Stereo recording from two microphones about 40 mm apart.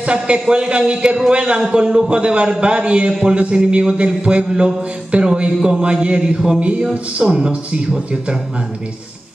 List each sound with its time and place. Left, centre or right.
0.0 s speech: right